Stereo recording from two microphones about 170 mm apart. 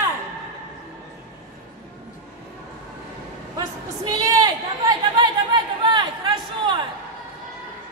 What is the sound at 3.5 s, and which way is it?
Chatter, 25° right (ahead or behind).